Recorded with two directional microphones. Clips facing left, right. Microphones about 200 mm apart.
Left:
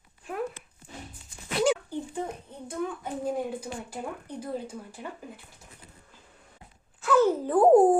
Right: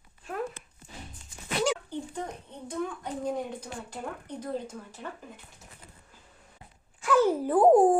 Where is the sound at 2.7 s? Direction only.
5° left (ahead or behind).